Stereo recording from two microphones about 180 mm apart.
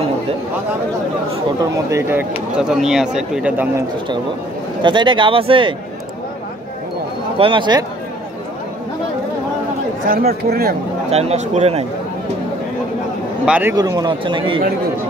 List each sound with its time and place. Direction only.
1.9 s speech: 15° right (ahead or behind)
4.8 s speech: 25° right (ahead or behind)
7.3 s speech: 30° right (ahead or behind)
10.0 s speech: 55° right (ahead or behind)
11.1 s speech: 35° right (ahead or behind)
13.5 s a man's voice: 10° right (ahead or behind)
13.7 s speech: 20° right (ahead or behind)